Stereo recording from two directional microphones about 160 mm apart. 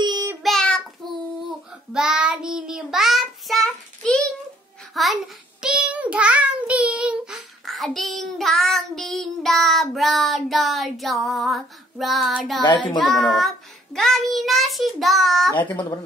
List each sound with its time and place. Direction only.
0.0 s child singing: 25° right (ahead or behind)
0.4 s child singing: centre (ahead or behind)
1.9 s child singing: 5° right (ahead or behind)
15.7 s speech: 30° left (ahead or behind)